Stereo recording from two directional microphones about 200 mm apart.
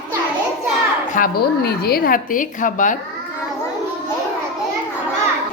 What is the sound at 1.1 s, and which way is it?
A woman's voice, 50° left (ahead or behind).